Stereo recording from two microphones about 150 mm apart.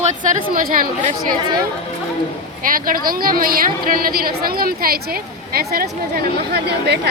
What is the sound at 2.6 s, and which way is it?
A woman's voice, 70° right (ahead or behind).